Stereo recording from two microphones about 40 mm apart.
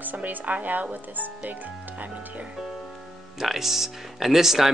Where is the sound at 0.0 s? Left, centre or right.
Right.